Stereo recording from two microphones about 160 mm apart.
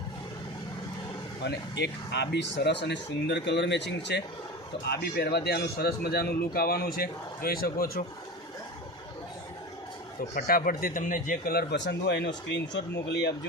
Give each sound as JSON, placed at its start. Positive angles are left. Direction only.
{"t": 1.4, "sound": "speech", "side_deg": 90}
{"t": 10.2, "sound": "speech", "side_deg": 65}